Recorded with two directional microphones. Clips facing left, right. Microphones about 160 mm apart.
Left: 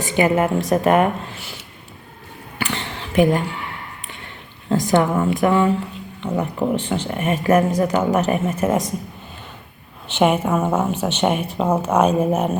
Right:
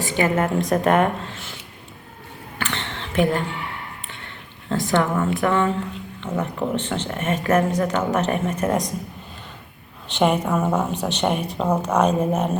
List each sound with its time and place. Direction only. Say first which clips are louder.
0.0 s speech: left 3 dB; 15° left (ahead or behind)
2.6 s a sound: left 3 dB; 10° left (ahead or behind)
4.7 s speech: left 3 dB; 15° left (ahead or behind)
10.1 s speech: left 2 dB; 5° left (ahead or behind)